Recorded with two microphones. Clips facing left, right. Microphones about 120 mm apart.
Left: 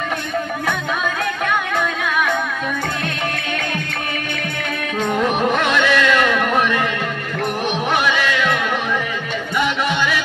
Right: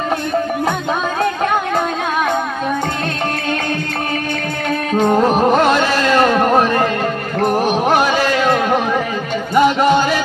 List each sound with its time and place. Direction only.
1.2 s music: 30° right (ahead or behind)
4.9 s music: 35° right (ahead or behind)
7.9 s music: 40° right (ahead or behind)